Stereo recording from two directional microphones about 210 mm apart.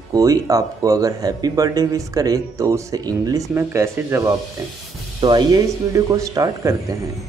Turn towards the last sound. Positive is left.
turn(degrees=-15)  # may be behind; listen again after turning